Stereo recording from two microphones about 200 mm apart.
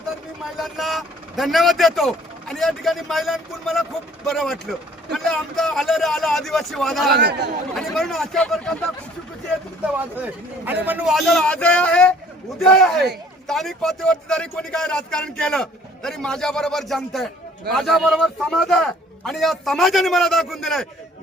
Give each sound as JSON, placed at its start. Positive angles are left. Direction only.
{"t": 0.6, "sound": "speech", "side_deg": 0}
{"t": 7.2, "sound": "speech", "side_deg": -55}
{"t": 7.8, "sound": "speech", "side_deg": 0}
{"t": 10.8, "sound": "speech", "side_deg": -5}